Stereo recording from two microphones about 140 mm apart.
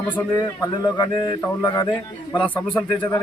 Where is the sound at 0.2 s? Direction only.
25° left (ahead or behind).